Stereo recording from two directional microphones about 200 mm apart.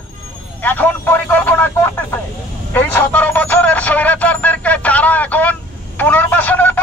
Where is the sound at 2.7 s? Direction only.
10° left (ahead or behind).